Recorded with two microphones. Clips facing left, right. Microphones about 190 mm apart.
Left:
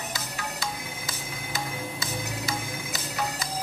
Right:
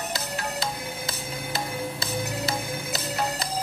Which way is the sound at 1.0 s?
65° right (ahead or behind).